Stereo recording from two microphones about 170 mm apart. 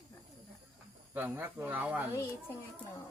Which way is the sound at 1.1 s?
10° right (ahead or behind).